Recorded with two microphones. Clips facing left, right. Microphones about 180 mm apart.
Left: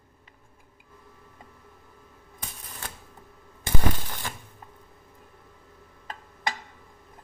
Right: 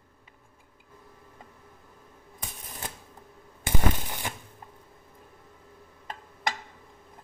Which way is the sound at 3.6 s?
15° right (ahead or behind).